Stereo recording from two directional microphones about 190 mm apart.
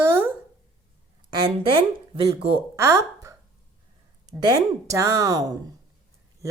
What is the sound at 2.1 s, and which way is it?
Speech, 30° right (ahead or behind).